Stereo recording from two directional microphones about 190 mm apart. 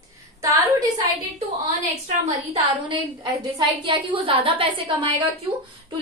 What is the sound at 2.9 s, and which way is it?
A woman's voice, 25° right (ahead or behind).